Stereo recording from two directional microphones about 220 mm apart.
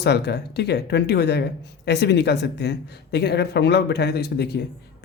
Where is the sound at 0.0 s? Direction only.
50° left (ahead or behind).